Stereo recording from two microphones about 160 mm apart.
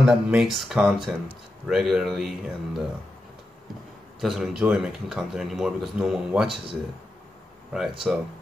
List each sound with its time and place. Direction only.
0.0 s speech: 5° right (ahead or behind)
4.2 s speech: centre (ahead or behind)
8.1 s speech: 5° right (ahead or behind)